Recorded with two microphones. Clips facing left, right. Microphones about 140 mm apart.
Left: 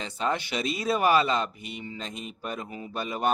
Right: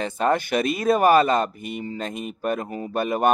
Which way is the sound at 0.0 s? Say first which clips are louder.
Right 7 dB; 50° right (ahead or behind).